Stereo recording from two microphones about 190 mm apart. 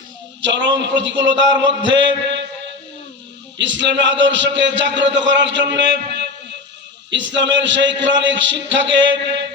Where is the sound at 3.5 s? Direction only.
75° right (ahead or behind).